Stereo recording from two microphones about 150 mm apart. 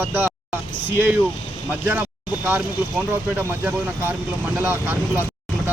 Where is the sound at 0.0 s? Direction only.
15° right (ahead or behind).